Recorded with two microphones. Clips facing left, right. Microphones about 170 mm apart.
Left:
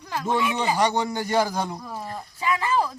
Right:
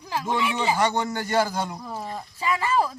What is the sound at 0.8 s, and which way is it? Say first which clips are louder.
Speech: left 1 dB; 15° left (ahead or behind).